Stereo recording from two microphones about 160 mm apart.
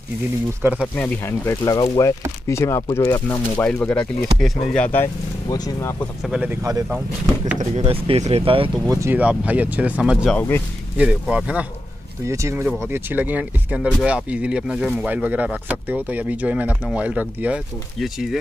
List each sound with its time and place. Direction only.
0.6 s speech: 15° right (ahead or behind)
0.9 s speech: 10° left (ahead or behind)
6.2 s speech: 5° right (ahead or behind)
6.5 s speech: 15° right (ahead or behind)
7.8 s speech: 35° right (ahead or behind)
8.8 s speech: 20° right (ahead or behind)
10.3 s speech: 15° left (ahead or behind)
11.0 s speech: 10° right (ahead or behind)
12.3 s speech: 20° right (ahead or behind); by 18.4 s centre (ahead or behind)